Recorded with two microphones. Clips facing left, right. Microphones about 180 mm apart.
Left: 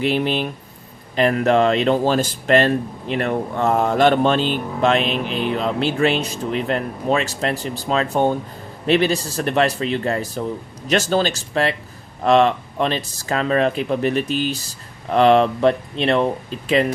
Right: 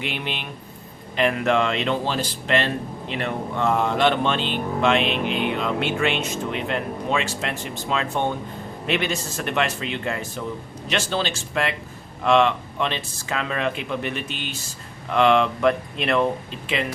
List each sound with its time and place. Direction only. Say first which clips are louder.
0.0 s speech: left 10 dB; 35° left (ahead or behind)